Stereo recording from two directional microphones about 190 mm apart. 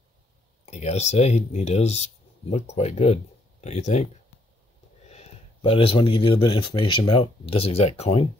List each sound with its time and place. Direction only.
0.7 s speech: 35° left (ahead or behind)